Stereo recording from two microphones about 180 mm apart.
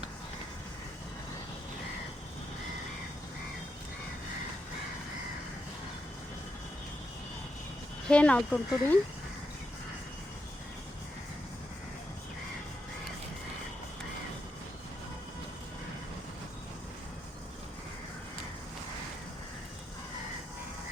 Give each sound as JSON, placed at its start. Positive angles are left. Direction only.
{"t": 8.0, "sound": "speech", "side_deg": 5}